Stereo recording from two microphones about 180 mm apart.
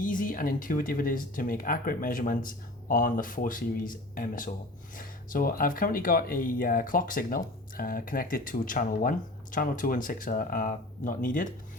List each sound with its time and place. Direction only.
0.0 s speech: 50° left (ahead or behind)